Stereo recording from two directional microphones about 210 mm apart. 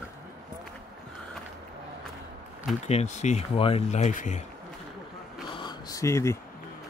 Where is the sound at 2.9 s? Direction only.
30° left (ahead or behind).